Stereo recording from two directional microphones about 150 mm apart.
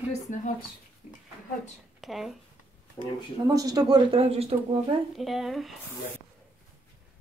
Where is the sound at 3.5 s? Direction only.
25° right (ahead or behind).